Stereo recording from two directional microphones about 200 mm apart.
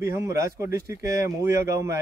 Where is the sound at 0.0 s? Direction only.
15° right (ahead or behind).